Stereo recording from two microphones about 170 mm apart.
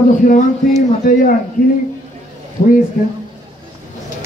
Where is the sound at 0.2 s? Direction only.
50° left (ahead or behind).